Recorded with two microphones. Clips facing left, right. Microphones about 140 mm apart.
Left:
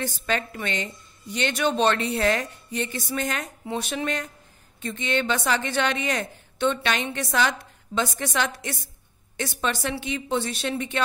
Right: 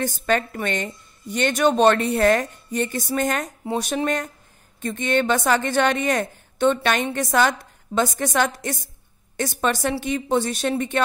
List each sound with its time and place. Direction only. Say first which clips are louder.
0.0 s a woman's voice: right 5 dB; 50° right (ahead or behind)